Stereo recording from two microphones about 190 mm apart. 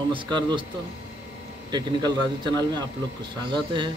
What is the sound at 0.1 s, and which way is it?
Speech, 25° right (ahead or behind).